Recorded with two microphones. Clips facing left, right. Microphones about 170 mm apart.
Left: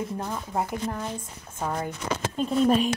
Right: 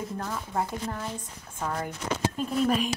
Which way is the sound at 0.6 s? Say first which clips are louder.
Left 2 dB; centre (ahead or behind).